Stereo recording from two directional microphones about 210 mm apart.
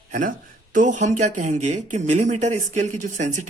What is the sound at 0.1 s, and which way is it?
Speech, 40° right (ahead or behind).